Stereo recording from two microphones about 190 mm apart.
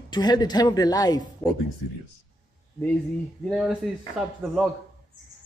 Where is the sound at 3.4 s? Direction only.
Centre (ahead or behind).